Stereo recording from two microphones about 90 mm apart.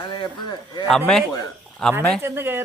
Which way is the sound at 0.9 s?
5° left (ahead or behind).